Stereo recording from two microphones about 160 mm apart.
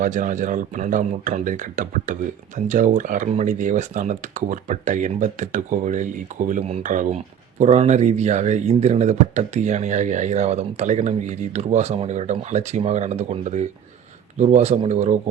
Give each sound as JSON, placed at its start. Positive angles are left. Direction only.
{"t": 0.0, "sound": "speech", "side_deg": -55}